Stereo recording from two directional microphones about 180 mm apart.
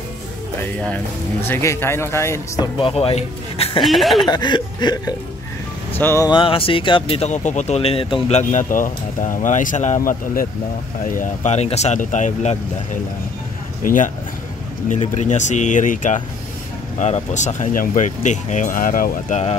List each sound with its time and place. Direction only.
0.7 s speech: 5° left (ahead or behind)
2.8 s speech: 30° left (ahead or behind)
3.8 s speech: centre (ahead or behind)
4.3 s speech: 25° left (ahead or behind); by 19.5 s 45° left (ahead or behind)